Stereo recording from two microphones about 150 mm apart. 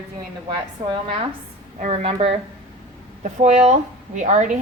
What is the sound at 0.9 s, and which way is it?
Speech, 40° right (ahead or behind).